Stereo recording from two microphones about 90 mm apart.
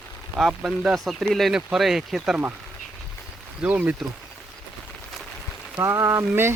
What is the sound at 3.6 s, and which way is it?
Speech, 20° right (ahead or behind).